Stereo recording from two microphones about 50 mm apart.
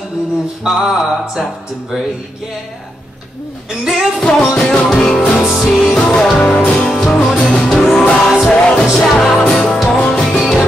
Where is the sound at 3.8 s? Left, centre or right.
Centre.